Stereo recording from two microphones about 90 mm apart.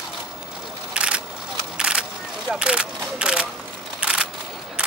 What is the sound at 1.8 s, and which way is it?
Single-lens reflex camera, 10° right (ahead or behind).